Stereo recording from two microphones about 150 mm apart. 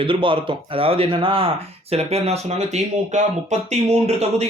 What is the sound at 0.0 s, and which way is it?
Speech, 35° right (ahead or behind).